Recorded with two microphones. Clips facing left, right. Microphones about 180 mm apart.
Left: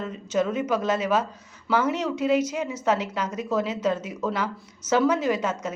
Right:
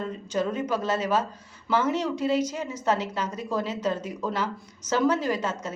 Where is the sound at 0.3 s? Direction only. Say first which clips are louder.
Left 3 dB; 35° right (ahead or behind).